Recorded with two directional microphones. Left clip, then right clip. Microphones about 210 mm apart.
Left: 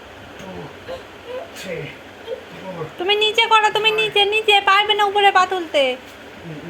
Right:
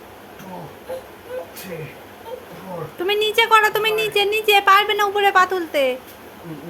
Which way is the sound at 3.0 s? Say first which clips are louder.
Left 1 dB; 15° right (ahead or behind).